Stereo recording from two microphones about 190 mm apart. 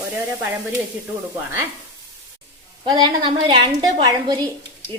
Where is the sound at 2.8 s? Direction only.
25° right (ahead or behind).